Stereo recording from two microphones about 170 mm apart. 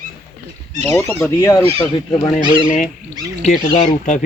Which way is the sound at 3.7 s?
45° left (ahead or behind).